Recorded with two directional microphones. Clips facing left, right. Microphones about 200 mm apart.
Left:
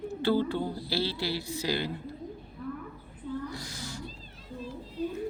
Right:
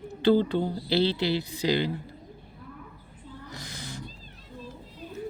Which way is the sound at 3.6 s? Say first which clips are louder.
Even; 20° right (ahead or behind).